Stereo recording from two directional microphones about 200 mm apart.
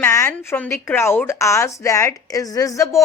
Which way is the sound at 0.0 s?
10° left (ahead or behind).